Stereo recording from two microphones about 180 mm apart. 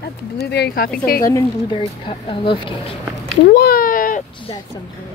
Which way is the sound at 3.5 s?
60° left (ahead or behind).